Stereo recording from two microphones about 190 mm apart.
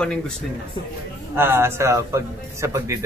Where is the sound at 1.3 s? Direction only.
10° right (ahead or behind).